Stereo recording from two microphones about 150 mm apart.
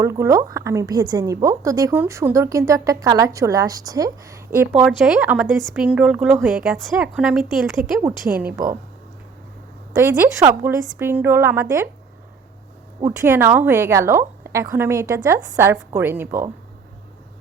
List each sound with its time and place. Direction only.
0.0 s a woman's voice: 20° right (ahead or behind)
4.9 s a woman's voice: 5° right (ahead or behind)
10.0 s a woman's voice: 15° right (ahead or behind)
13.0 s a woman's voice: 15° right (ahead or behind)